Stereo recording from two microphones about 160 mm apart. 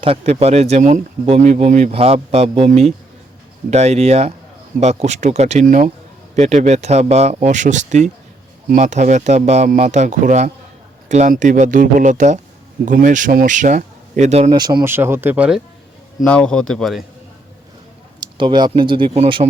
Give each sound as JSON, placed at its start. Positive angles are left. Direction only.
{"t": 0.0, "sound": "a man's voice", "side_deg": -35}
{"t": 14.5, "sound": "speech", "side_deg": -25}
{"t": 14.8, "sound": "speech", "side_deg": -15}
{"t": 16.2, "sound": "a man's voice", "side_deg": 5}
{"t": 18.2, "sound": "a man's voice", "side_deg": -30}